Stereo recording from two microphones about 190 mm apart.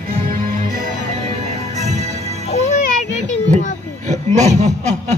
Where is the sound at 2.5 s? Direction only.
35° left (ahead or behind).